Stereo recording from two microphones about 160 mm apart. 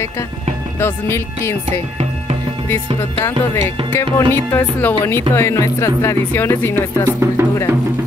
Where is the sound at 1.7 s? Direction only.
35° right (ahead or behind).